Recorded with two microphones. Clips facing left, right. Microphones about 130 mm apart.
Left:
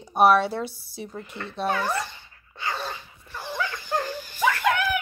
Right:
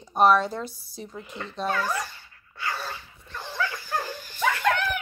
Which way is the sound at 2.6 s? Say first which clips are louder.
Left 1 dB; 20° left (ahead or behind).